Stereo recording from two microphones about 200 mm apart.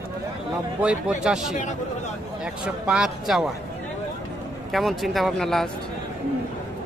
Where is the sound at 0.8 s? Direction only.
5° right (ahead or behind).